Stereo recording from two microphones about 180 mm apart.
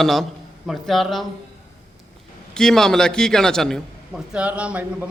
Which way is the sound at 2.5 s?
5° left (ahead or behind).